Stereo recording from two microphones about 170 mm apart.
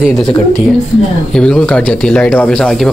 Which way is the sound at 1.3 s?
5° left (ahead or behind).